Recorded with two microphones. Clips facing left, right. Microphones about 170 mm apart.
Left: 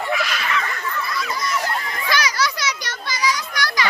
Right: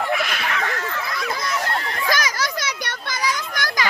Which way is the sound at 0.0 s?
50° right (ahead or behind).